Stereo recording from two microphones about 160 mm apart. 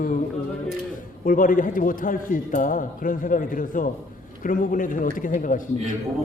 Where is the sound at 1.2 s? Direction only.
60° left (ahead or behind).